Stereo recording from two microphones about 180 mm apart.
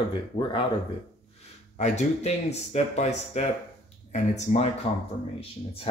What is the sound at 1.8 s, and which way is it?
Speech, 40° left (ahead or behind).